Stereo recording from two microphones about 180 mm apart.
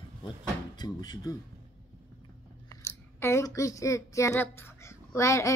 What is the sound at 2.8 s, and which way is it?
Speech, 15° left (ahead or behind).